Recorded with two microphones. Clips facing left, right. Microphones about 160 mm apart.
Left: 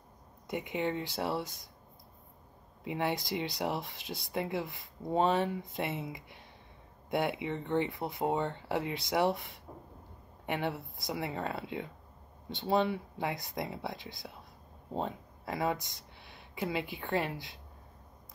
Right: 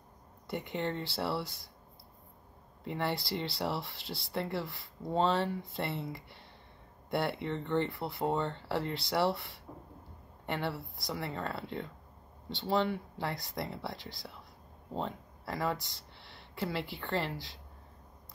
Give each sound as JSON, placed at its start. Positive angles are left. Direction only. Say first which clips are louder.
{"t": 0.5, "sound": "speech", "louder": "left 2 dB", "side_deg": 10}
{"t": 2.8, "sound": "speech", "louder": "left 1 dB", "side_deg": 10}
{"t": 10.4, "sound": "speech", "louder": "left 1 dB", "side_deg": 10}